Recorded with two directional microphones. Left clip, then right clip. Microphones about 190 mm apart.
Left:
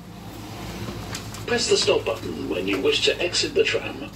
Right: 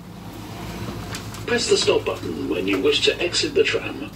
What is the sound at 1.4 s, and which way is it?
Speech, 40° right (ahead or behind).